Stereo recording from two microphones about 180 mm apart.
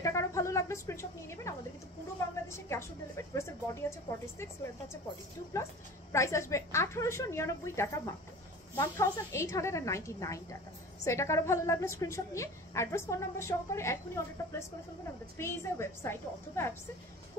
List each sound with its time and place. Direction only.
0.0 s a sound: 15° left (ahead or behind)
2.4 s a woman's voice: 15° left (ahead or behind)
6.1 s a woman's voice: 15° left (ahead or behind)